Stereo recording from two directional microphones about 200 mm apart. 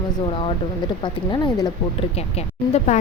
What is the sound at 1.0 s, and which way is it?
Speech, 20° left (ahead or behind).